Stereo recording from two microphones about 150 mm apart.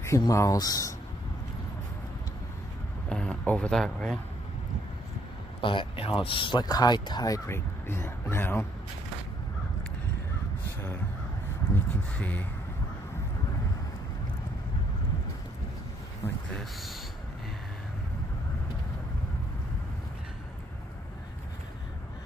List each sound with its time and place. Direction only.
0.0 s speech: 20° left (ahead or behind)
3.1 s speech: 5° left (ahead or behind)
5.6 s speech: 35° left (ahead or behind); by 8.6 s 15° left (ahead or behind)
11.7 s speech: 10° left (ahead or behind)